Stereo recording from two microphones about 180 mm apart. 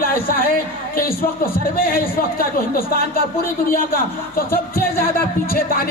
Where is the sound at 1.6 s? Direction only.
55° left (ahead or behind).